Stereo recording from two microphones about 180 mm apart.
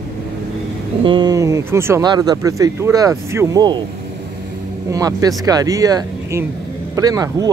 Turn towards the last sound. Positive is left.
turn(degrees=-20)  # may be behind; listen again after turning